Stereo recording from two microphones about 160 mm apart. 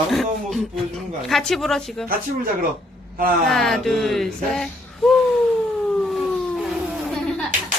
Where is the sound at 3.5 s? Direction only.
Centre (ahead or behind).